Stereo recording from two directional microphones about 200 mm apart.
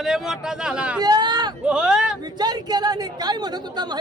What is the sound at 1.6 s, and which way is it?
Speech, 5° right (ahead or behind).